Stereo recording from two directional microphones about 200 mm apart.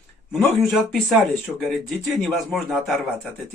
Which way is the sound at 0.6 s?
Centre (ahead or behind).